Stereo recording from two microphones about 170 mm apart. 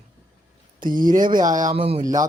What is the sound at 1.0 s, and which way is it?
Speech, 55° right (ahead or behind).